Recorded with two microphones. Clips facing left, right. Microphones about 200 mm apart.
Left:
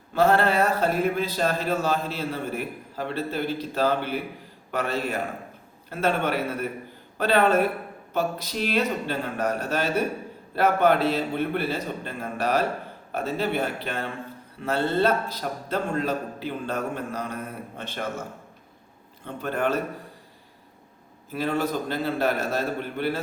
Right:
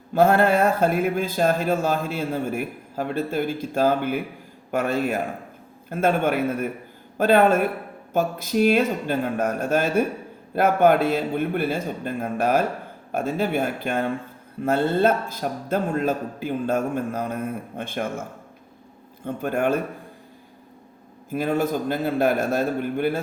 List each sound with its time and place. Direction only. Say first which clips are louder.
0.1 s speech: right 3 dB; 50° right (ahead or behind)
21.2 s speech: right 3 dB; 50° right (ahead or behind)